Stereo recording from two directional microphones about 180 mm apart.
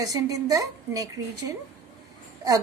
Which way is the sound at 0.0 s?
20° right (ahead or behind).